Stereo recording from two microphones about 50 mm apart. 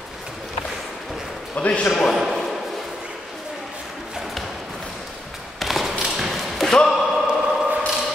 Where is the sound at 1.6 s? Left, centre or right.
Left.